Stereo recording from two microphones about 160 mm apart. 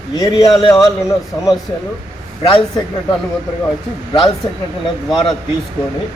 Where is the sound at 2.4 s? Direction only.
30° left (ahead or behind).